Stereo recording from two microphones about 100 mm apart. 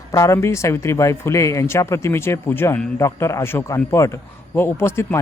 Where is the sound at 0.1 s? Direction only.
30° left (ahead or behind).